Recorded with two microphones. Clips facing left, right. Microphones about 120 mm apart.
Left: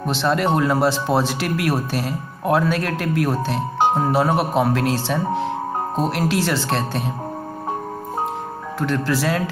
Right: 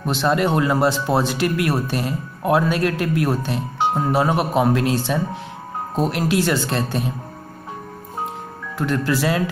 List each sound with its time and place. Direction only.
0.0 s speech: 5° right (ahead or behind)
3.7 s music: 45° left (ahead or behind)
4.1 s speech: centre (ahead or behind)
8.7 s speech: 5° right (ahead or behind)